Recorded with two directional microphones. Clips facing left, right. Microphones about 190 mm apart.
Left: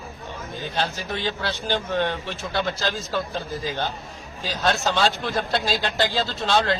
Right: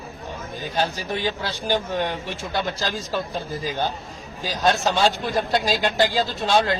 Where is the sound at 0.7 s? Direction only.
10° right (ahead or behind).